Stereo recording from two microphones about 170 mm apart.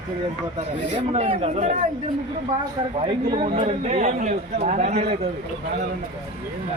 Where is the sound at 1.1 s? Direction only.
40° right (ahead or behind).